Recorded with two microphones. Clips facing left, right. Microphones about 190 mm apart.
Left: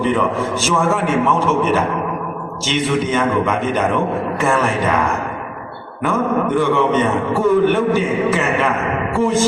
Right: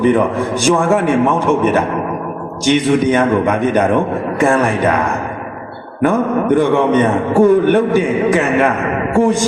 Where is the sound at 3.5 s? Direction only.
15° right (ahead or behind).